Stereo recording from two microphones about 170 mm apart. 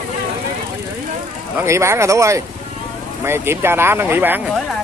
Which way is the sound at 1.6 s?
15° right (ahead or behind).